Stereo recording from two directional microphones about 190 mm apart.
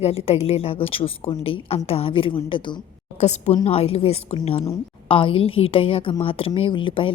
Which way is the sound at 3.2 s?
35° left (ahead or behind).